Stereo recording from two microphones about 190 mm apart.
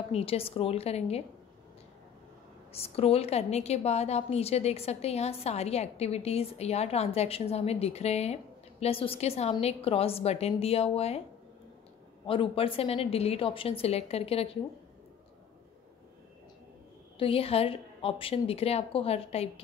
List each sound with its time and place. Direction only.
0.1 s a woman's voice: 30° left (ahead or behind)
2.7 s a woman's voice: 30° left (ahead or behind)
12.3 s a woman's voice: 30° left (ahead or behind)
17.2 s a woman's voice: 30° left (ahead or behind)